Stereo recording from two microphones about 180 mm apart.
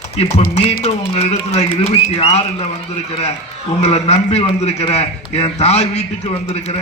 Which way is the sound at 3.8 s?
35° left (ahead or behind).